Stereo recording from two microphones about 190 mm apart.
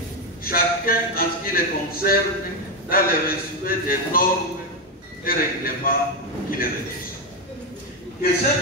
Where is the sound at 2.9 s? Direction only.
50° left (ahead or behind).